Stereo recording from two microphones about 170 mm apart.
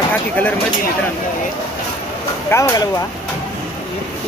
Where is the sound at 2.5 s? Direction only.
15° left (ahead or behind).